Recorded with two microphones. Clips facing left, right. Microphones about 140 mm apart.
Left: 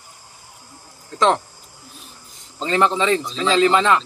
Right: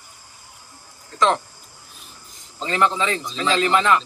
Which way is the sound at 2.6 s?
25° left (ahead or behind).